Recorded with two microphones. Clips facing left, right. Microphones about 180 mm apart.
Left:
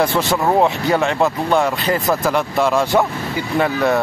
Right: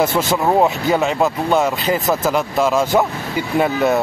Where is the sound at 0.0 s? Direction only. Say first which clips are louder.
Even; centre (ahead or behind).